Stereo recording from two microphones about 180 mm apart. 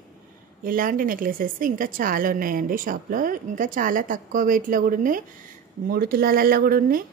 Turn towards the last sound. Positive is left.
turn(degrees=-50)  # may be behind; listen again after turning